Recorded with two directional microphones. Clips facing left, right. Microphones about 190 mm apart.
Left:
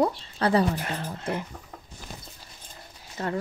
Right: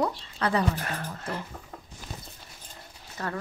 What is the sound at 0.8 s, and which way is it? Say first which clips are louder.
Speech: left 2 dB; 20° left (ahead or behind).